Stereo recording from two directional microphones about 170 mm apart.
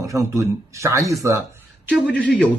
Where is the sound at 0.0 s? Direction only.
20° right (ahead or behind).